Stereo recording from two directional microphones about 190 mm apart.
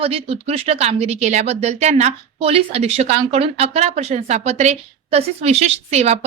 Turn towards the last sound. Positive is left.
turn(degrees=-35)  # may be behind; listen again after turning